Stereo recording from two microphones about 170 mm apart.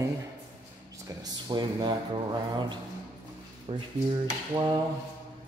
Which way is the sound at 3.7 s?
30° right (ahead or behind).